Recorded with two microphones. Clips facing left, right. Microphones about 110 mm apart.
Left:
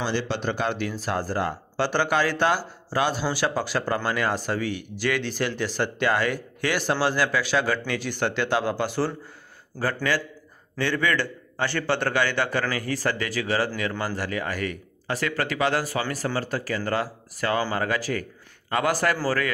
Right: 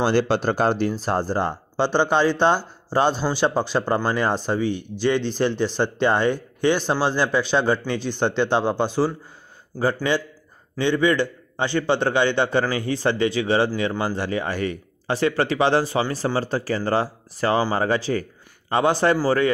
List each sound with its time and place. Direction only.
0.0 s speech: 50° right (ahead or behind); by 19.5 s 25° right (ahead or behind)